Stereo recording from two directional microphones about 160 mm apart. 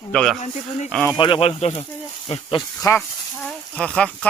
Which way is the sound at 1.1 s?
30° left (ahead or behind).